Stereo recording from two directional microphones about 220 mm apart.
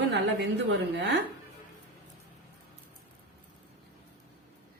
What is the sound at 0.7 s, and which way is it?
Speech, 50° right (ahead or behind).